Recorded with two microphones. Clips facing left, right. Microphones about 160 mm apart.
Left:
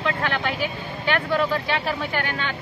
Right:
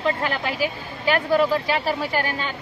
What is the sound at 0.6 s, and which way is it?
Speech, 5° right (ahead or behind).